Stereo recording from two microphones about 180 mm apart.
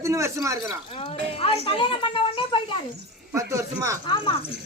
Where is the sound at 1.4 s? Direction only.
30° left (ahead or behind).